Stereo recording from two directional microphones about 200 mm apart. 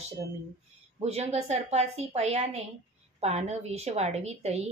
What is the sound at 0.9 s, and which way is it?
A woman's voice, 30° right (ahead or behind).